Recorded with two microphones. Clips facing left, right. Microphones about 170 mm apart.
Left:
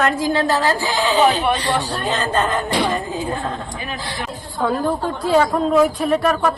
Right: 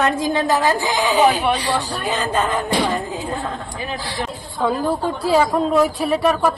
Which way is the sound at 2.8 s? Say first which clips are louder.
Left 1 dB; 20° right (ahead or behind).